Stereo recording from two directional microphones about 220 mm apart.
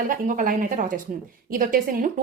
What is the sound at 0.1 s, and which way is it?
A woman's voice, 40° right (ahead or behind).